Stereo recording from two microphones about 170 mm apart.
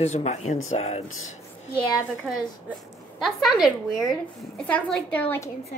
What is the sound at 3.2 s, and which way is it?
A woman's voice, centre (ahead or behind).